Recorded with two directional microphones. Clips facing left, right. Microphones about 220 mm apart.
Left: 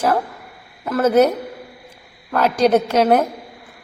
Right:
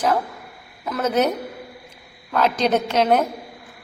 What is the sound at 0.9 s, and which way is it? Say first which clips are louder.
Speech: left 6 dB; 5° left (ahead or behind).